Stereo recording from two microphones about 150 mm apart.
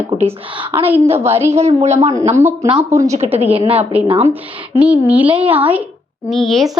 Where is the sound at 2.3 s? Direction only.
20° right (ahead or behind).